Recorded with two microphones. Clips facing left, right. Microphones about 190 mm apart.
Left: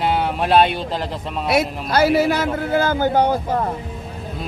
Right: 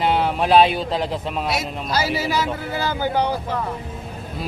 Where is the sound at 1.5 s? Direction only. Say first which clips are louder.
Left 9 dB; 55° left (ahead or behind).